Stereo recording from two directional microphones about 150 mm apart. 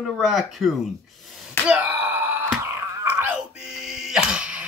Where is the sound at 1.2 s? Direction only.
Centre (ahead or behind).